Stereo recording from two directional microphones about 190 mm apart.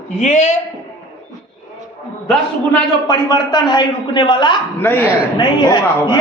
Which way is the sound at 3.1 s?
25° left (ahead or behind).